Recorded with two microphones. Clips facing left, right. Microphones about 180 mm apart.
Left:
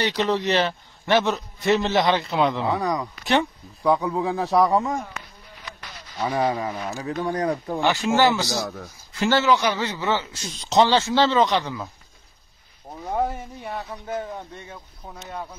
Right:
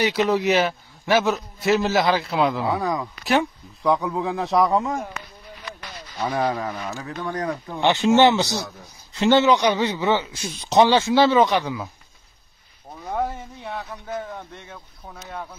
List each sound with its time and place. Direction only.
0.0 s a man's voice: 10° right (ahead or behind)
3.8 s a man's voice: 5° left (ahead or behind)
6.1 s speech: centre (ahead or behind)
7.3 s speech: 35° left (ahead or behind)
7.8 s speech: 20° right (ahead or behind)
13.7 s speech: 10° left (ahead or behind)